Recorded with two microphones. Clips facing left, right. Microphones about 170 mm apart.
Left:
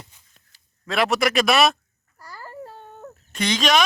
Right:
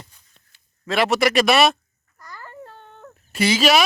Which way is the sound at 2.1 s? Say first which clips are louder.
Left 1 dB; 35° left (ahead or behind).